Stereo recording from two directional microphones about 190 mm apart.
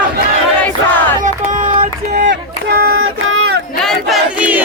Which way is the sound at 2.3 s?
55° right (ahead or behind).